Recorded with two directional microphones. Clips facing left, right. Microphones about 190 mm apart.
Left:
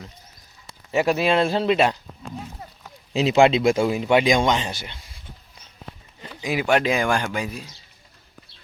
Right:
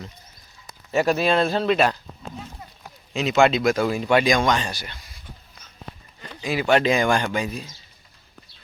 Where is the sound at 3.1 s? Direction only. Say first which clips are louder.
Left 2 dB; 30° left (ahead or behind).